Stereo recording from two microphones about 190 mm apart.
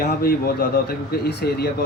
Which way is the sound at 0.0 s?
50° left (ahead or behind).